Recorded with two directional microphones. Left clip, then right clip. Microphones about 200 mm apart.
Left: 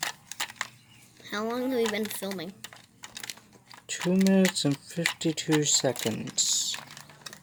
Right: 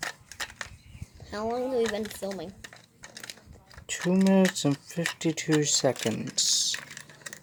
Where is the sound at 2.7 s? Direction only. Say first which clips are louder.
Left 2 dB; 15° left (ahead or behind).